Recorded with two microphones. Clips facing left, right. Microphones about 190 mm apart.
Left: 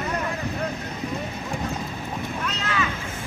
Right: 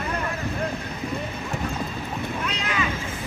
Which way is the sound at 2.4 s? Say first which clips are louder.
Left 2 dB; 15° right (ahead or behind).